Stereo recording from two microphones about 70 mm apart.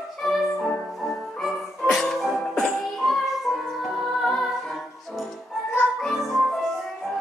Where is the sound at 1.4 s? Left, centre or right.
Centre.